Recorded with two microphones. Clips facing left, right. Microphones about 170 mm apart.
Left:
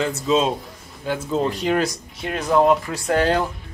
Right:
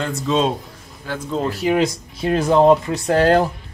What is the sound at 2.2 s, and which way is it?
Speech, 30° right (ahead or behind).